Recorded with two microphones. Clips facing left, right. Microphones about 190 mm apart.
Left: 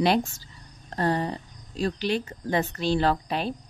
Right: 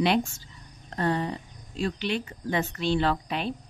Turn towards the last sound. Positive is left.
turn(degrees=40)  # may be behind; listen again after turning